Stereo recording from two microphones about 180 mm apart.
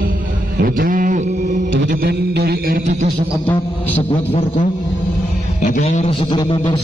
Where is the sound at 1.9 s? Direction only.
60° right (ahead or behind); by 3.1 s 40° right (ahead or behind).